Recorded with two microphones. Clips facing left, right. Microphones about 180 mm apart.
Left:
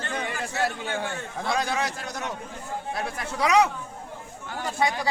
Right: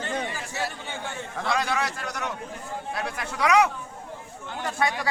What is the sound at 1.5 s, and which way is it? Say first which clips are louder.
A man's voice: even; 25° left (ahead or behind).